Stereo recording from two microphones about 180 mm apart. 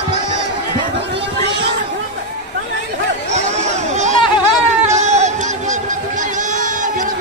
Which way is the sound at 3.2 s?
40° right (ahead or behind).